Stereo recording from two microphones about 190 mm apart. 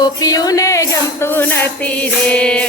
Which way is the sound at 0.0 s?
20° left (ahead or behind).